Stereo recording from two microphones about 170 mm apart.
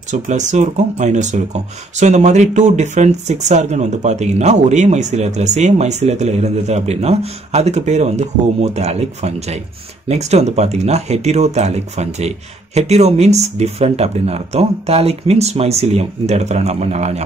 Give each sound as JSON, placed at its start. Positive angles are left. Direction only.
{"t": 0.1, "sound": "speech", "side_deg": -45}